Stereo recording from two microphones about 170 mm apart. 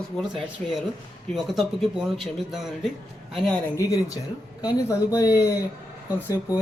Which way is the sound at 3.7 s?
20° left (ahead or behind).